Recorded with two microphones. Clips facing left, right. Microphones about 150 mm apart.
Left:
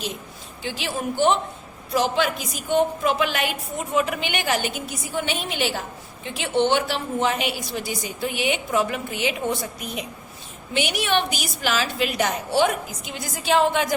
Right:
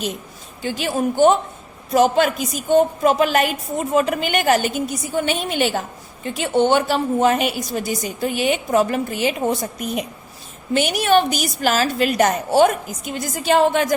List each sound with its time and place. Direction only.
0.6 s a woman's voice: 50° right (ahead or behind)